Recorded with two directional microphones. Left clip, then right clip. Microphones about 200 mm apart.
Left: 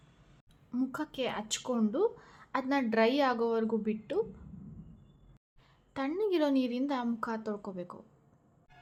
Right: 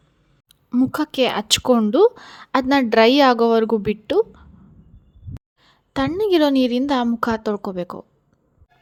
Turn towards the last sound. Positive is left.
turn(degrees=-45)  # may be behind; listen again after turning